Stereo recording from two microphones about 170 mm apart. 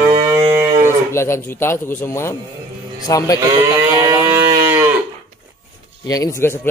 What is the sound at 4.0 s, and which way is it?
Cattle, 15° right (ahead or behind).